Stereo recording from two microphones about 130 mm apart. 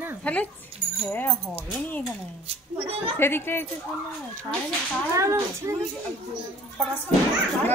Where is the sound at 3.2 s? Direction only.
15° left (ahead or behind).